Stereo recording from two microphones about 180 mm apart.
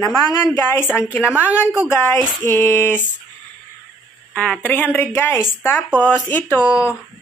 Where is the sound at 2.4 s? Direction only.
10° left (ahead or behind).